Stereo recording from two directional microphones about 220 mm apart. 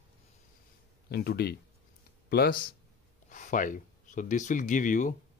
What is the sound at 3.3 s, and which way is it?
Speech, 35° left (ahead or behind).